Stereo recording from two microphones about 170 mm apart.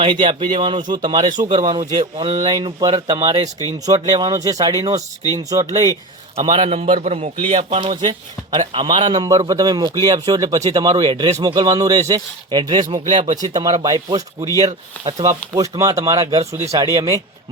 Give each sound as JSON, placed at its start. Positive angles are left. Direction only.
{"t": 0.0, "sound": "a man's voice", "side_deg": -30}
{"t": 6.3, "sound": "a man's voice", "side_deg": -30}